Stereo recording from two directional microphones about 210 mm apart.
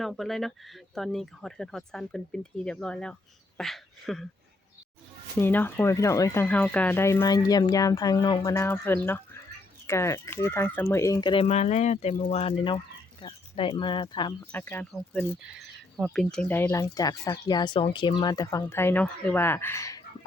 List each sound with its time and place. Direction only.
0.0 s speech: centre (ahead or behind)
5.4 s speech: 10° left (ahead or behind)
14.5 s speech: 10° left (ahead or behind)